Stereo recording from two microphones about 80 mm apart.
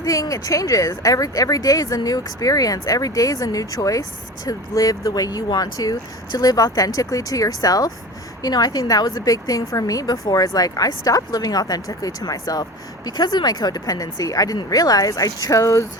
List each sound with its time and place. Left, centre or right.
0.0 s a woman's voice: left